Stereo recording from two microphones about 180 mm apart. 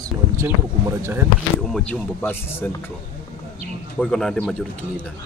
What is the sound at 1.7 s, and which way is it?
Speech, 10° left (ahead or behind).